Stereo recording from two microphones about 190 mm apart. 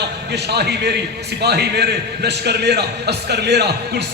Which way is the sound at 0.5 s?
60° right (ahead or behind).